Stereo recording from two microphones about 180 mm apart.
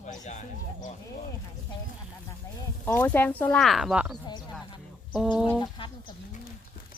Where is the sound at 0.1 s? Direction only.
40° left (ahead or behind).